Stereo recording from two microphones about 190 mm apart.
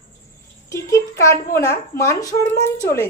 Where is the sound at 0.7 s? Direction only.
15° left (ahead or behind).